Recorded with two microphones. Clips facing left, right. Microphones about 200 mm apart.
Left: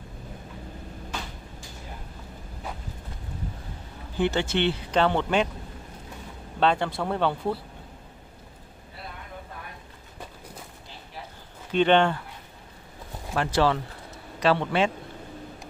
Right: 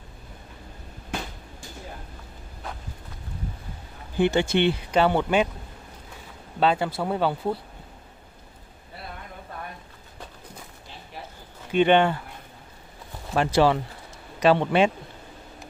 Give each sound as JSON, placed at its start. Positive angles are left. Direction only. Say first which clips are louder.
{"t": 4.2, "sound": "speech", "louder": "right 3 dB", "side_deg": -15}
{"t": 6.6, "sound": "speech", "louder": "right 1 dB", "side_deg": -5}
{"t": 11.7, "sound": "speech", "louder": "right 1 dB", "side_deg": -10}
{"t": 13.3, "sound": "speech", "louder": "right 3 dB", "side_deg": -15}